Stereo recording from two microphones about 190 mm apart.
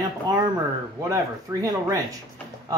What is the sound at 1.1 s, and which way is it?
Speech, 15° right (ahead or behind).